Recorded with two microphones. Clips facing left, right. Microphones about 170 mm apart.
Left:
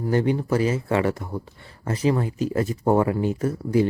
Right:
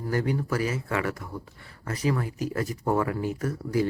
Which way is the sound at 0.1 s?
25° left (ahead or behind).